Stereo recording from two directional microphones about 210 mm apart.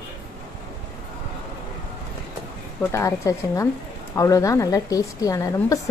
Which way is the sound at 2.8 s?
15° left (ahead or behind).